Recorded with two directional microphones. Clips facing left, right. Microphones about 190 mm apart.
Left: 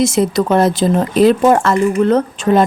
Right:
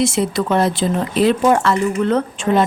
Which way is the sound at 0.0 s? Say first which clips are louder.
Left 4 dB; 45° left (ahead or behind).